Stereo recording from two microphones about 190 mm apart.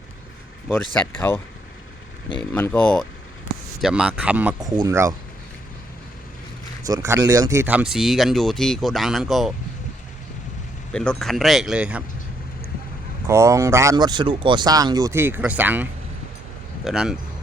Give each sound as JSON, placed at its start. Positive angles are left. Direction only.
{"t": 2.4, "sound": "speech", "side_deg": 10}
{"t": 3.8, "sound": "speech", "side_deg": -5}
{"t": 6.8, "sound": "speech", "side_deg": -15}
{"t": 10.9, "sound": "speech", "side_deg": 5}
{"t": 13.2, "sound": "speech", "side_deg": -15}